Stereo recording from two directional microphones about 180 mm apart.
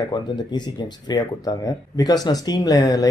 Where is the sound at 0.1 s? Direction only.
25° left (ahead or behind).